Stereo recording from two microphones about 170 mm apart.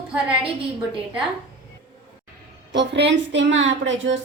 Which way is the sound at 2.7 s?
90° right.